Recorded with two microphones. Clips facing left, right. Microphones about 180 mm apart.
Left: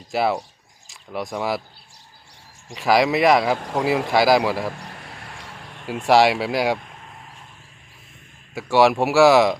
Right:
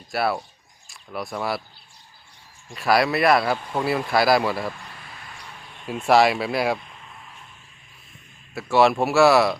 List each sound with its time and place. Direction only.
0.1 s speech: 15° left (ahead or behind)
2.7 s speech: 15° left (ahead or behind)
4.0 s speech: 90° left
4.3 s speech: 15° left (ahead or behind)
4.9 s a sound: 70° left (ahead or behind); by 5.9 s 90° left
6.4 s speech: 90° left
8.5 s speech: 15° left (ahead or behind)